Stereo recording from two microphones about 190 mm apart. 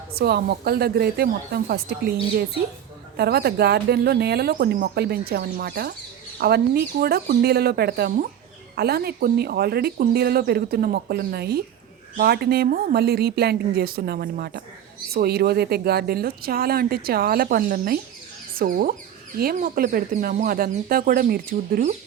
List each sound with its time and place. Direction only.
0.1 s speech: 55° right (ahead or behind)
3.2 s speech: 55° right (ahead or behind)